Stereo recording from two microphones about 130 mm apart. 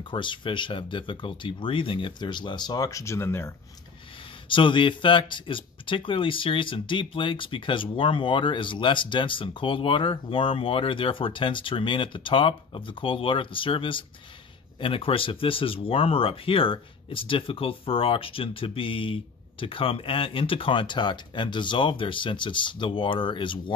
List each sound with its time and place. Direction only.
0.0 s speech: 40° left (ahead or behind); by 3.5 s 20° left (ahead or behind)
4.5 s speech: 40° left (ahead or behind)